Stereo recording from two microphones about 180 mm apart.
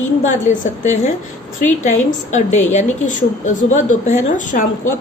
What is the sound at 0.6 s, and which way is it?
A woman's voice, 40° left (ahead or behind).